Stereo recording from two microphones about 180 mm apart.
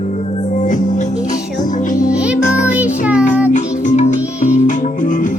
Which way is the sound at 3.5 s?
45° left (ahead or behind).